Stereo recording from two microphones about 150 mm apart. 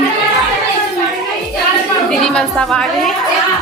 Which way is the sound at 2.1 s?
5° left (ahead or behind).